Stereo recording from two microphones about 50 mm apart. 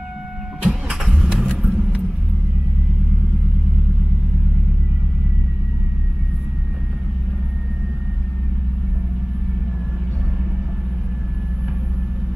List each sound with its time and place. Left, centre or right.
0.6 s vehicle: centre